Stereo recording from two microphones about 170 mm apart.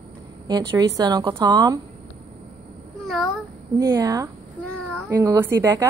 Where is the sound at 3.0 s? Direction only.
Centre (ahead or behind).